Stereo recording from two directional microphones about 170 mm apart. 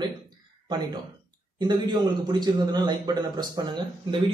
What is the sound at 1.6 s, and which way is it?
A man's voice, 25° right (ahead or behind).